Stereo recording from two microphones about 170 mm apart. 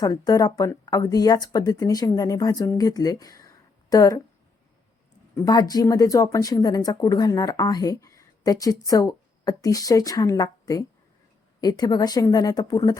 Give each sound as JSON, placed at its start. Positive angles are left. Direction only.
{"t": 0.0, "sound": "speech", "side_deg": 25}
{"t": 5.3, "sound": "speech", "side_deg": 20}